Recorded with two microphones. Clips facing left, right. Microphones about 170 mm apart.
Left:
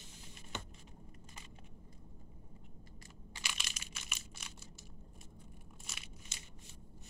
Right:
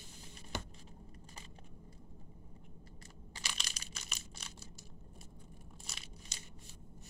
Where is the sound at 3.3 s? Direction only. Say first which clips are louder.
Even; 40° right (ahead or behind).